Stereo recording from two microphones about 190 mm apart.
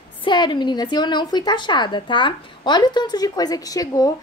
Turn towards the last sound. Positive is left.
turn(degrees=20)  # may be behind; listen again after turning